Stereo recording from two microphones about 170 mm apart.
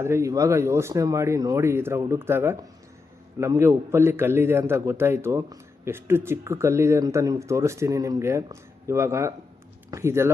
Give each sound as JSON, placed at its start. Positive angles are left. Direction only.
{"t": 0.0, "sound": "a man's voice", "side_deg": -15}